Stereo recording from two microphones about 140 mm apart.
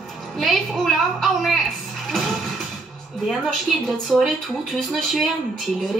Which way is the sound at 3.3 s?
Centre (ahead or behind).